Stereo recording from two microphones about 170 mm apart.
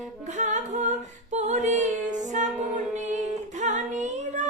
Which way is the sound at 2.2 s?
45° right (ahead or behind).